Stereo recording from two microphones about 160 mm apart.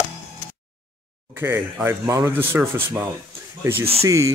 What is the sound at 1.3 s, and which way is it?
Speech, 15° right (ahead or behind).